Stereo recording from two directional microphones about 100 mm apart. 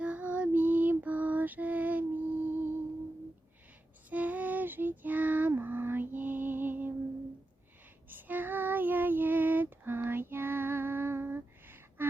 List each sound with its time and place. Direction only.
0.0 s lullaby: 15° right (ahead or behind)
4.1 s child singing: 15° right (ahead or behind)
8.1 s child singing: 20° right (ahead or behind)